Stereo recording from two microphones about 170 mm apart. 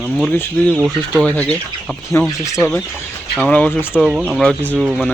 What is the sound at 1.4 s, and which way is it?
Speech, 10° left (ahead or behind).